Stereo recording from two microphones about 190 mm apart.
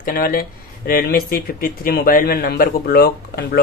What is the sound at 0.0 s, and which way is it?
Speech, 50° left (ahead or behind).